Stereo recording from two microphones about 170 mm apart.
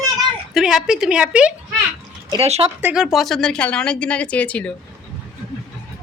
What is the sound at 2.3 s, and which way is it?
Speech, 35° right (ahead or behind).